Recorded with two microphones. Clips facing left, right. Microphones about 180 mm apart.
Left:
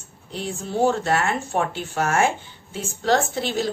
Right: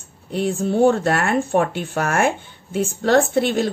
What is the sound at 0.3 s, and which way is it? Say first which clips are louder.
Speech: right 8 dB; 55° right (ahead or behind).